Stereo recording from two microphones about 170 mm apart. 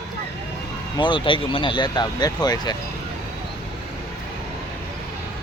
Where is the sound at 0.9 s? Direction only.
30° left (ahead or behind).